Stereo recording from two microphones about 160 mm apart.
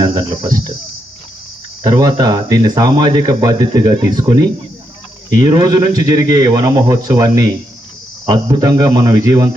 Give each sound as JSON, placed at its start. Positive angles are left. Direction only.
{"t": 0.0, "sound": "speech", "side_deg": -25}
{"t": 1.8, "sound": "speech", "side_deg": -20}